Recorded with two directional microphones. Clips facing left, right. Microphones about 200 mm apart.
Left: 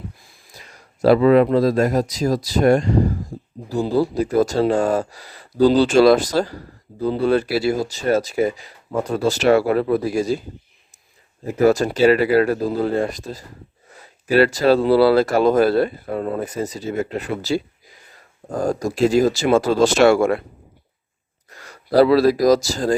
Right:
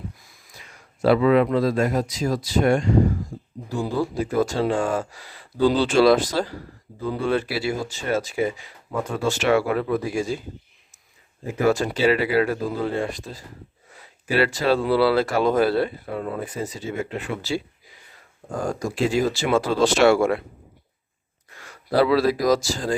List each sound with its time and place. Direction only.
0.2 s speech: 30° left (ahead or behind)
11.6 s speech: 40° left (ahead or behind)
21.7 s speech: 40° left (ahead or behind)